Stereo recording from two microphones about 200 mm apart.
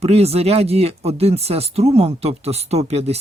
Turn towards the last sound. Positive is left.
turn(degrees=-30)  # may be behind; listen again after turning